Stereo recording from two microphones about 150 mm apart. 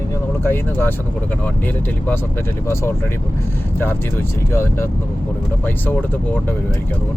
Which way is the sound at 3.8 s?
15° left (ahead or behind).